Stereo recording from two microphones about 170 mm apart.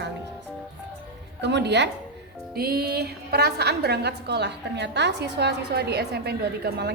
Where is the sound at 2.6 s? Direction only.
65° right (ahead or behind).